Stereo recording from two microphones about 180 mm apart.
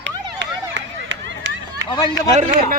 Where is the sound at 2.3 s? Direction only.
40° right (ahead or behind).